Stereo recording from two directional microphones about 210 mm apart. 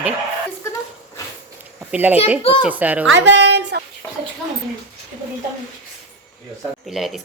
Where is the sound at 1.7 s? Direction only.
10° right (ahead or behind).